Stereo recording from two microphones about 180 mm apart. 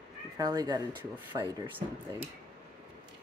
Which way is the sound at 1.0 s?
10° right (ahead or behind).